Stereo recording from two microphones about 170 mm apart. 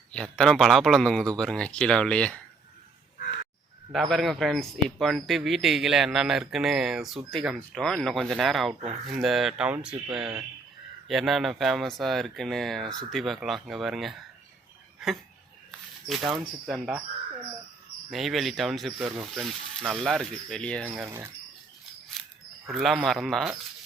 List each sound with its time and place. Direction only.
0.1 s speech: 5° left (ahead or behind)
4.1 s speech: centre (ahead or behind)
16.0 s speech: centre (ahead or behind)
18.1 s speech: centre (ahead or behind)
21.0 s speech: 15° right (ahead or behind)
22.7 s speech: centre (ahead or behind)